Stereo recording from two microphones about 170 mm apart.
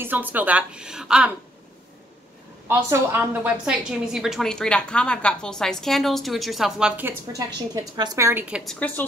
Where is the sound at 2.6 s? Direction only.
10° right (ahead or behind).